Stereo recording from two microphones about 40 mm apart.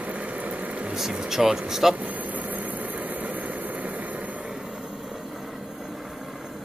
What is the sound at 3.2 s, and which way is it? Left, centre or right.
Vehicle, right.